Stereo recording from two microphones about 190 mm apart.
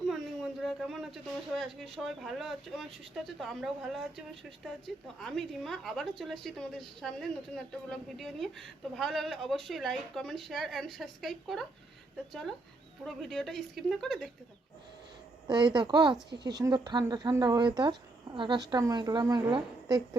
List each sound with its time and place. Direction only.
0.6 s a woman's voice: centre (ahead or behind)
13.1 s a woman's voice: centre (ahead or behind)
15.4 s a woman's voice: 25° right (ahead or behind)